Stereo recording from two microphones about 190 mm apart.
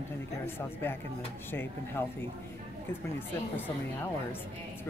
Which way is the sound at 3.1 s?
10° left (ahead or behind).